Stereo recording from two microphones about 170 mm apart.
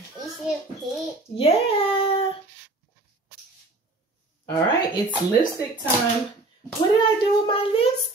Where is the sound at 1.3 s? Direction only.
35° left (ahead or behind).